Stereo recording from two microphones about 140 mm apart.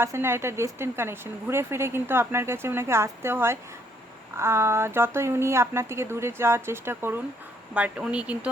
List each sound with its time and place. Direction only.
0.0 s a woman's voice: 15° right (ahead or behind)